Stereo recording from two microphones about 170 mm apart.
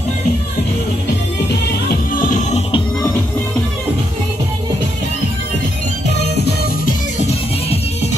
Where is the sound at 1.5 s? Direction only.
60° left (ahead or behind); by 2.8 s 40° left (ahead or behind).